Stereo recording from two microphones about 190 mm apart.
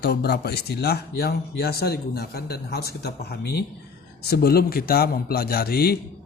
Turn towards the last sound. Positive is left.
turn(degrees=55)  # may be behind; listen again after turning